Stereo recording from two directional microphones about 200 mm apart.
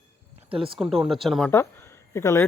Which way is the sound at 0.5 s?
25° right (ahead or behind).